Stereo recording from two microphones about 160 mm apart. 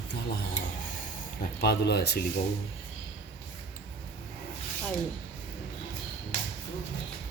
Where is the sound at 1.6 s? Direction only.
90° left.